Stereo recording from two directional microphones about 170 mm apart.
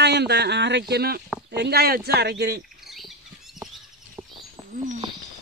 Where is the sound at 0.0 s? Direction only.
80° right.